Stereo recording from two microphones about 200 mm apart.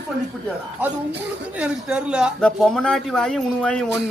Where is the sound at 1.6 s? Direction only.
5° right (ahead or behind).